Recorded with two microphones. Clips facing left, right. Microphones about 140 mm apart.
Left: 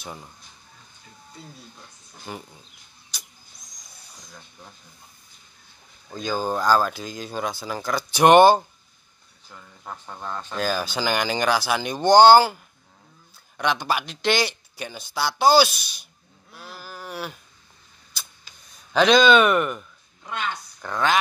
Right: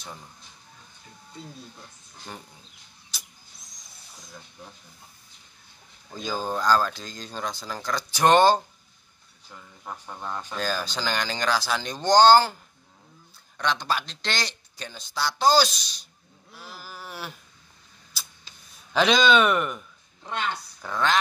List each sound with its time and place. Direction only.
2.3 s speech: 10° left (ahead or behind)
3.1 s vehicle: centre (ahead or behind)
6.1 s speech: centre (ahead or behind)
9.8 s speech: 5° right (ahead or behind)
10.5 s speech: 5° left (ahead or behind)
13.6 s speech: 10° left (ahead or behind)
16.5 s sheep: centre (ahead or behind)
18.9 s speech: centre (ahead or behind)
20.2 s speech: 30° right (ahead or behind)
20.8 s speech: 5° right (ahead or behind)